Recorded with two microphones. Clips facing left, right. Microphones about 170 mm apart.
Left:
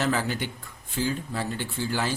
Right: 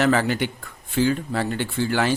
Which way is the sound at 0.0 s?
75° right (ahead or behind).